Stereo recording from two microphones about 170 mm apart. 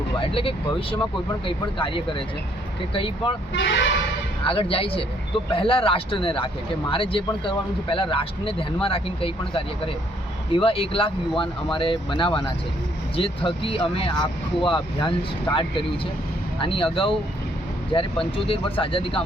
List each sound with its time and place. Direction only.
0.2 s speech: 30° left (ahead or behind)
3.5 s speech: 90° left
4.4 s speech: 30° left (ahead or behind)
16.6 s speech: 30° left (ahead or behind)